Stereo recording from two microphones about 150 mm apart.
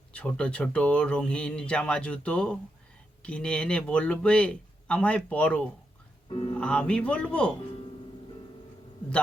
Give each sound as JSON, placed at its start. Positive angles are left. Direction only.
{"t": 0.1, "sound": "speech", "side_deg": 10}
{"t": 6.2, "sound": "speech", "side_deg": 35}
{"t": 6.6, "sound": "speech", "side_deg": 5}